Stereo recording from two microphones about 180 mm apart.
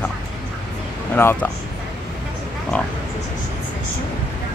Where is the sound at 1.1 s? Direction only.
10° left (ahead or behind).